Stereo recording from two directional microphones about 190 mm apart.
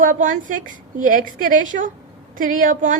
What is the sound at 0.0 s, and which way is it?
A woman's voice, 45° right (ahead or behind).